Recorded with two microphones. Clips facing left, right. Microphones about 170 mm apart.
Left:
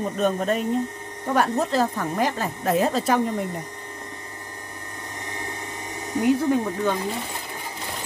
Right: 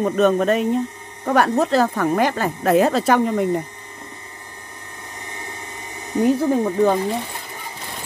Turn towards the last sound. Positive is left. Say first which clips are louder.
# right 5 dB
turn(degrees=-35)  # may be behind; listen again after turning